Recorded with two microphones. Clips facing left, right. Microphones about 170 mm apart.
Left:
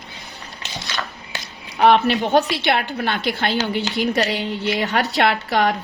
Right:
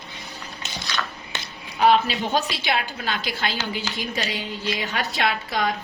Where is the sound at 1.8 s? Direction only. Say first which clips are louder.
Left 4 dB; 65° left (ahead or behind).